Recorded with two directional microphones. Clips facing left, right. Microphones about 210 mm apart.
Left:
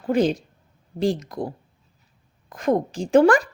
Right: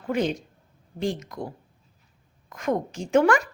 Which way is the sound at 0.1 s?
35° left (ahead or behind).